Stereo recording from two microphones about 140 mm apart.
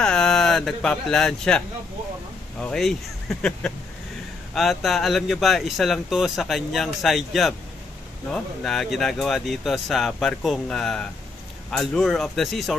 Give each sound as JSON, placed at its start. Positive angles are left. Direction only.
{"t": 0.0, "sound": "speech", "side_deg": 5}
{"t": 2.6, "sound": "speech", "side_deg": 5}